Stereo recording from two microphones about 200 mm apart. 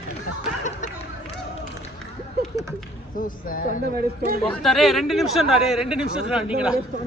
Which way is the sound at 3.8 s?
50° right (ahead or behind).